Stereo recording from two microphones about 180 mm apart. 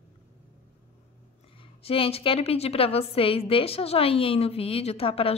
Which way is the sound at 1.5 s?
30° left (ahead or behind).